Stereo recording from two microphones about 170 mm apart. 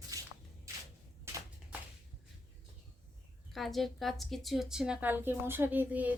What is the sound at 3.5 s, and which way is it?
A woman's voice, centre (ahead or behind).